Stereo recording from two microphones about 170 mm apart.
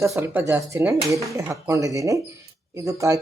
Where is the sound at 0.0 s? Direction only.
15° right (ahead or behind).